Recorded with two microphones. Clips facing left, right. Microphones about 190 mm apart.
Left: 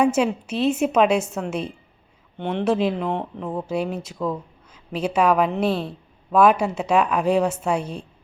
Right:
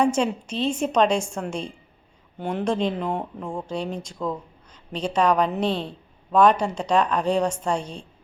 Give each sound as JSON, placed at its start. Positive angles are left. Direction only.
{"t": 0.0, "sound": "speech", "side_deg": 5}